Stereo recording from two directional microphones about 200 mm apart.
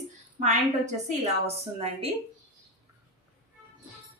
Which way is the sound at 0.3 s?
35° right (ahead or behind).